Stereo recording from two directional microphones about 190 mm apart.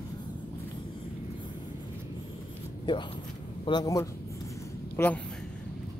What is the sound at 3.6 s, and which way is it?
A man's voice, 20° left (ahead or behind).